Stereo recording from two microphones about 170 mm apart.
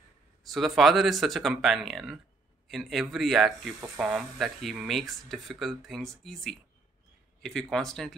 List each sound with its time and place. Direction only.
0.5 s speech: centre (ahead or behind)